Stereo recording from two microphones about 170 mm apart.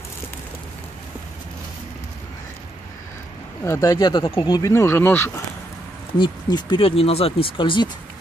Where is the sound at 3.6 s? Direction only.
20° left (ahead or behind).